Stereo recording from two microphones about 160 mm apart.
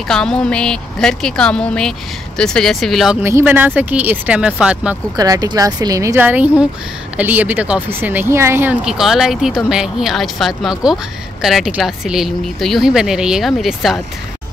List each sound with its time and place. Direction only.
0.1 s speech: 5° left (ahead or behind)
3.2 s speech: 15° right (ahead or behind)
5.1 s speech: 25° right (ahead or behind)
8.8 s speech: centre (ahead or behind)